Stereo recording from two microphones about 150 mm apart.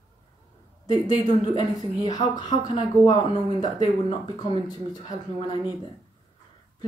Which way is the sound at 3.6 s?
30° left (ahead or behind).